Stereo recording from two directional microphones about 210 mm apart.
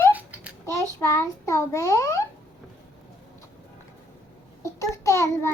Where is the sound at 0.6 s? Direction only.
15° left (ahead or behind).